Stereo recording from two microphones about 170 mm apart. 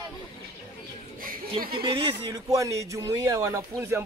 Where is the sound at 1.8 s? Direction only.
30° right (ahead or behind).